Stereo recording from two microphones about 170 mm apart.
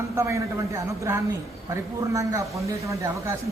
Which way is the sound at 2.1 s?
20° right (ahead or behind).